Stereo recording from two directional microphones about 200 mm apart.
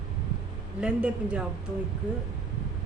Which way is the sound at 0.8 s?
5° right (ahead or behind).